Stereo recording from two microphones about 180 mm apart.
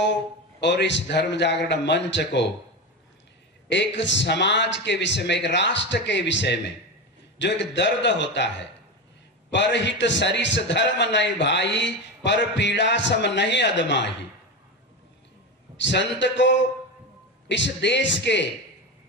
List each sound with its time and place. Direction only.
0.0 s a man's voice: 75° left (ahead or behind)
3.6 s a man's voice: 80° left
15.8 s a man's voice: 80° left